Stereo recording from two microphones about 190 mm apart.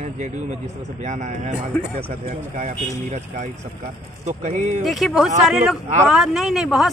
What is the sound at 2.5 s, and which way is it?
A man's voice, 40° right (ahead or behind).